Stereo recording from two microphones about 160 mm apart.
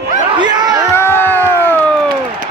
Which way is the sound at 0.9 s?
15° left (ahead or behind).